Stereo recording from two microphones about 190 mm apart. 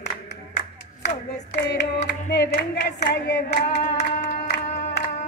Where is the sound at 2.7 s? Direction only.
60° left (ahead or behind).